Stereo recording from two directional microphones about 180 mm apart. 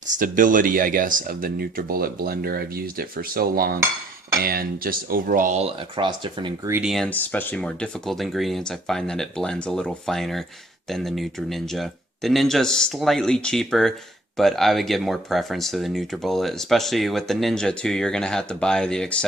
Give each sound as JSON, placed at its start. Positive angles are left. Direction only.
{"t": 0.2, "sound": "speech", "side_deg": -50}
{"t": 6.8, "sound": "speech", "side_deg": 0}